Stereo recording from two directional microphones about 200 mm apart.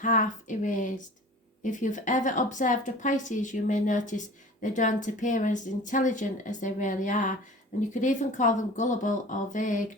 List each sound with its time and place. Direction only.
0.0 s speech: 40° left (ahead or behind)